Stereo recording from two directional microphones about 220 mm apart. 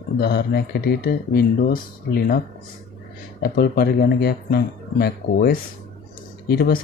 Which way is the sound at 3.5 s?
40° left (ahead or behind).